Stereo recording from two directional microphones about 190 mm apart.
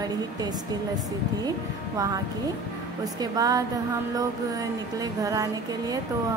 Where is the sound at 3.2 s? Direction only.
20° right (ahead or behind).